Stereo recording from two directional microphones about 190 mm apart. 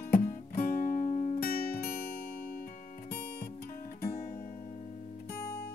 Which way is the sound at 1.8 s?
55° left (ahead or behind).